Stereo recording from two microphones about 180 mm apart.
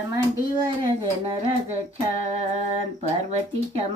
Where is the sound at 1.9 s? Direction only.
40° right (ahead or behind).